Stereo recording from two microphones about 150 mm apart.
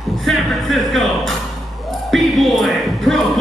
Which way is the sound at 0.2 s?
Centre (ahead or behind).